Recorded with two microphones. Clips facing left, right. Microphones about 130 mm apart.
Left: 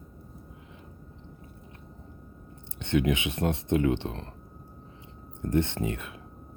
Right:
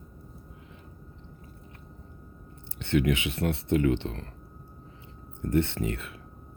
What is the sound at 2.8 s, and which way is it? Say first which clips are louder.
Speech: even; 20° left (ahead or behind).